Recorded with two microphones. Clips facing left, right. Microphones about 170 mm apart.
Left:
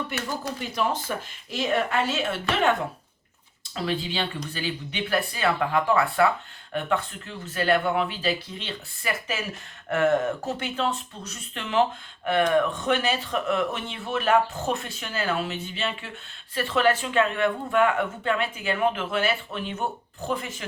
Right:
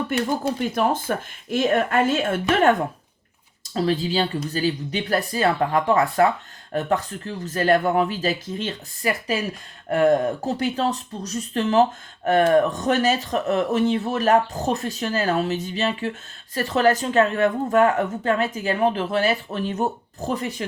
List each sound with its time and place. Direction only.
0.1 s speech: 50° right (ahead or behind)
3.8 s speech: 40° right (ahead or behind)